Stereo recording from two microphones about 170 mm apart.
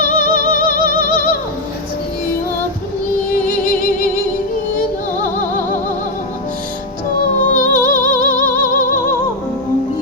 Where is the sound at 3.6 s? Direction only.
50° left (ahead or behind).